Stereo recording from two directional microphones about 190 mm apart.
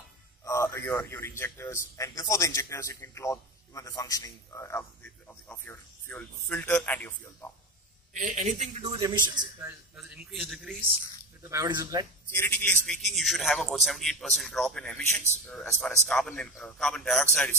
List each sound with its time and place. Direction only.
0.5 s a man's voice: 15° left (ahead or behind)
8.1 s speech: 40° right (ahead or behind)
8.9 s speech: 20° right (ahead or behind)
9.9 s a man's voice: 5° right (ahead or behind)
11.4 s speech: 20° right (ahead or behind)
12.3 s a man's voice: 10° left (ahead or behind)